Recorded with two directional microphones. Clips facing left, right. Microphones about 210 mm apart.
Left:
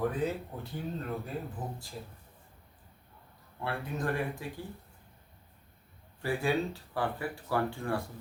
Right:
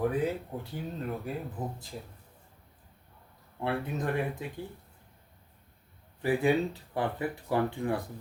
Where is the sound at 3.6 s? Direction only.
20° right (ahead or behind).